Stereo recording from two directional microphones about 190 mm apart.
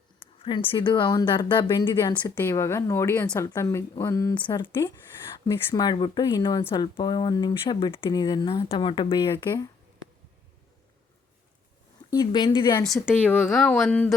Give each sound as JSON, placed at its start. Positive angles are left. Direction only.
{"t": 0.2, "sound": "a woman's voice", "side_deg": 25}
{"t": 12.1, "sound": "a woman's voice", "side_deg": 20}
{"t": 12.8, "sound": "speech", "side_deg": 0}